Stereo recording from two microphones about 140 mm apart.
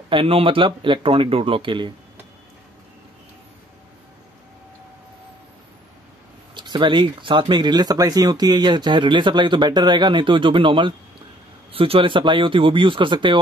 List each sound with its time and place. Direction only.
0.1 s speech: 40° right (ahead or behind)
6.5 s speech: 35° right (ahead or behind)